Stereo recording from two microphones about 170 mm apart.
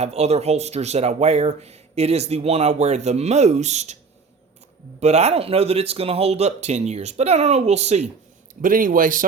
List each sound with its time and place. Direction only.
0.0 s speech: 40° right (ahead or behind)
4.9 s speech: 40° right (ahead or behind)
8.6 s a man's voice: 55° right (ahead or behind)